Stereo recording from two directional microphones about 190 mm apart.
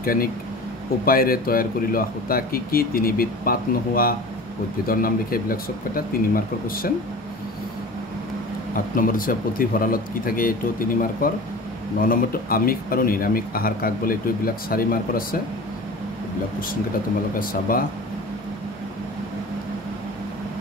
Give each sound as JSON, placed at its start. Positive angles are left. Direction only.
{"t": 0.0, "sound": "speech", "side_deg": 50}
{"t": 8.9, "sound": "speech", "side_deg": 45}
{"t": 17.4, "sound": "speech", "side_deg": 50}